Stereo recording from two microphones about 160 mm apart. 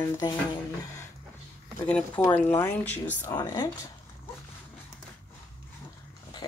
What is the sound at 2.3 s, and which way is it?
Speech, 10° left (ahead or behind).